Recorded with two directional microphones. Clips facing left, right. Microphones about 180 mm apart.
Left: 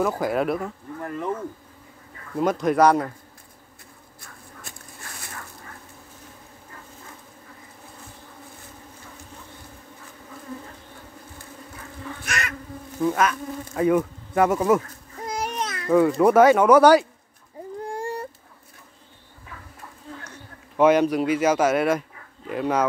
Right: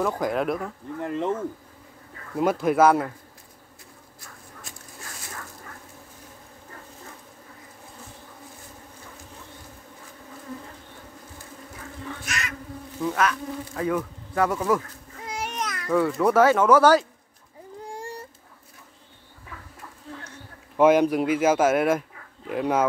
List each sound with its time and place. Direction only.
0.0 s speech: 5° left (ahead or behind)
1.0 s speech: 25° right (ahead or behind)
2.3 s speech: 5° right (ahead or behind)
12.3 s bee: 60° left (ahead or behind)
13.0 s speech: 5° left (ahead or behind)
13.7 s bee: 20° left (ahead or behind)
15.1 s babbling: 40° left (ahead or behind); by 16.1 s 25° left (ahead or behind)
16.3 s speech: 15° left (ahead or behind)
17.8 s a sound: 60° left (ahead or behind)
20.7 s speech: 10° right (ahead or behind)